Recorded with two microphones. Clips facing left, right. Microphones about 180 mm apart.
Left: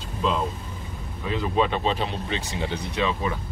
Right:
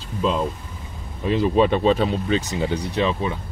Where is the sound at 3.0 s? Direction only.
30° right (ahead or behind).